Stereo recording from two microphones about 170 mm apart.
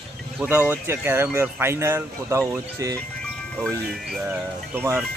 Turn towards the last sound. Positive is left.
turn(degrees=-10)  # may be behind; listen again after turning